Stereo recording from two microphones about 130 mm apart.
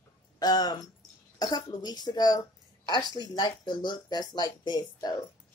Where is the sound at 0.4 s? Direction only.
30° left (ahead or behind).